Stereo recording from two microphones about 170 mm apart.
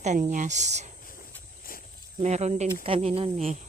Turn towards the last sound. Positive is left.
turn(degrees=-40)  # may be behind; listen again after turning